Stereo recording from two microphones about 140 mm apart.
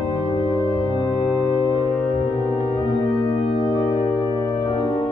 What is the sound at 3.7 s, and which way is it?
Music, 35° left (ahead or behind).